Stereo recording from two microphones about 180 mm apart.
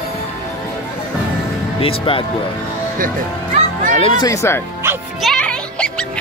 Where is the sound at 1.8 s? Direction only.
30° left (ahead or behind).